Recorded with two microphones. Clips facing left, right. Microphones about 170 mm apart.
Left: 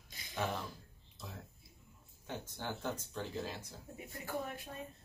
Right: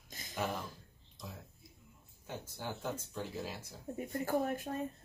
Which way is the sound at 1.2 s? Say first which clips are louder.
Right 2 dB; 5° left (ahead or behind).